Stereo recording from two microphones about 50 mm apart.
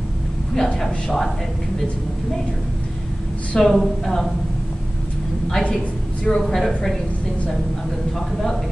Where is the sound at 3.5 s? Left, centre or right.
Centre.